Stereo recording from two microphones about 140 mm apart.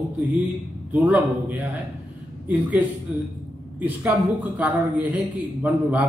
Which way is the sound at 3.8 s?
10° right (ahead or behind).